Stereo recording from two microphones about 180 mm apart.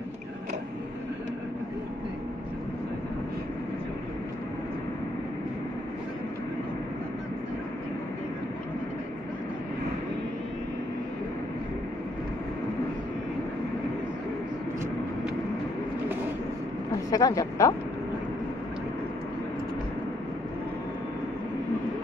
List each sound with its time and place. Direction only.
17.1 s speech: 20° left (ahead or behind)